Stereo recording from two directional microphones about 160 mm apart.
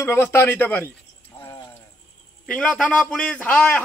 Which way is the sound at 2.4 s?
5° left (ahead or behind).